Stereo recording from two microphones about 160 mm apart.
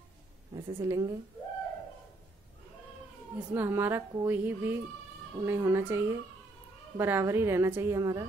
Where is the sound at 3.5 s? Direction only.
15° right (ahead or behind).